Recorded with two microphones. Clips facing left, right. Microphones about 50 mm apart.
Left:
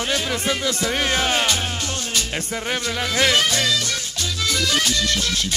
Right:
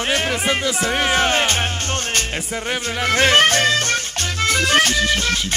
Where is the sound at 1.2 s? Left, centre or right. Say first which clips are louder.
Right 3 dB; right.